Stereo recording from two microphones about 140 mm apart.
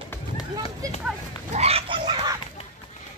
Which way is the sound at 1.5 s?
45° right (ahead or behind).